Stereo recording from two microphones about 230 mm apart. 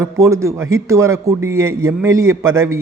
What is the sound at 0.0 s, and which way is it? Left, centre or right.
A man's voice, centre.